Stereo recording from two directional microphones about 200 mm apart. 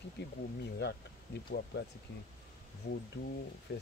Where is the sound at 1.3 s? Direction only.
60° left (ahead or behind).